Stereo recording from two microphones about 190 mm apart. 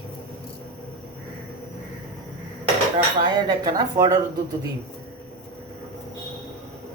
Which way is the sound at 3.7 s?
20° right (ahead or behind).